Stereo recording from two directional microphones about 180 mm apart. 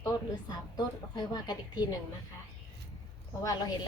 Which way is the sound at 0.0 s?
20° left (ahead or behind).